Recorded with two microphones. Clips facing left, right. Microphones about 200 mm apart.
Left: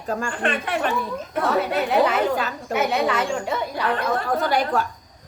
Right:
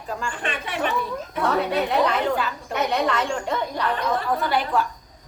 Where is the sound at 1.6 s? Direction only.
5° left (ahead or behind).